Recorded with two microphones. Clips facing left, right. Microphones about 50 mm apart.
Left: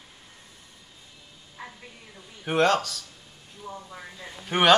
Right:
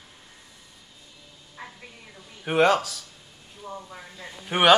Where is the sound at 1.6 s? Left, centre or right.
Centre.